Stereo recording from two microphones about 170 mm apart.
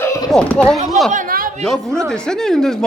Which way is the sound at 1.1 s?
55° right (ahead or behind).